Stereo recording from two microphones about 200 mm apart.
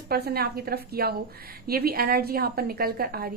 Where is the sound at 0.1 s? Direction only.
50° right (ahead or behind).